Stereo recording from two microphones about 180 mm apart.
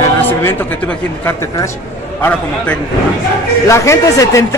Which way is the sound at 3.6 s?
15° left (ahead or behind).